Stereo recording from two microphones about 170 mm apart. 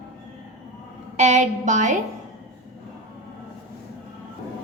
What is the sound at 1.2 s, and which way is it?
Speech, 45° right (ahead or behind).